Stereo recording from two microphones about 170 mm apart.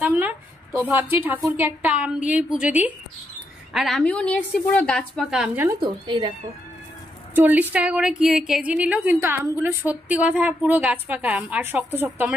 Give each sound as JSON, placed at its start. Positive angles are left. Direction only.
{"t": 0.0, "sound": "a sound", "side_deg": -10}
{"t": 1.4, "sound": "a woman's voice", "side_deg": -10}
{"t": 5.7, "sound": "speech", "side_deg": -25}
{"t": 7.3, "sound": "a woman's voice", "side_deg": -10}